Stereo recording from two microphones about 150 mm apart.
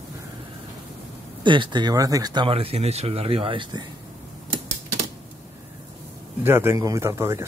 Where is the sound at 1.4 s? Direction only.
30° right (ahead or behind).